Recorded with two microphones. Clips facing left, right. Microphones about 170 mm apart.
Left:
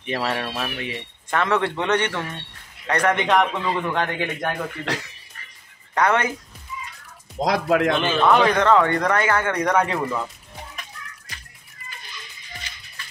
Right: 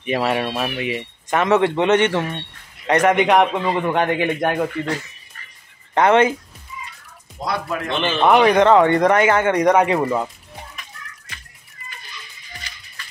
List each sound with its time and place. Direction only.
0.0 s speech: 15° right (ahead or behind)
5.9 s speech: 25° right (ahead or behind)
7.4 s speech: 80° left
8.2 s speech: 15° right (ahead or behind)